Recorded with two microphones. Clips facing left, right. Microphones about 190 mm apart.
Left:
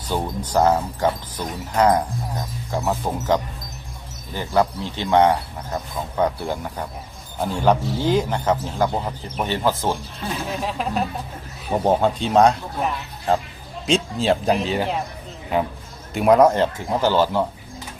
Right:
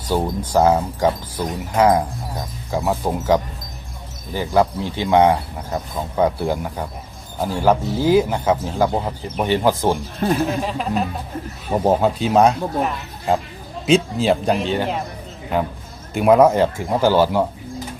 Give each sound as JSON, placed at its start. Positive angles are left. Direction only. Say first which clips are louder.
{"t": 0.1, "sound": "speech", "louder": "right 4 dB", "side_deg": -10}
{"t": 10.2, "sound": "speech", "louder": "right 9 dB", "side_deg": -55}
{"t": 10.6, "sound": "speech", "louder": "right 2 dB", "side_deg": 0}
{"t": 16.1, "sound": "speech", "louder": "right 2 dB", "side_deg": 0}